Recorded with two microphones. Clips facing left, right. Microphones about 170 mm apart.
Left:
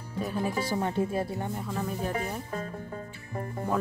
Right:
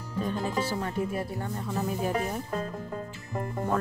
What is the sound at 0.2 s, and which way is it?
Speech, 10° left (ahead or behind).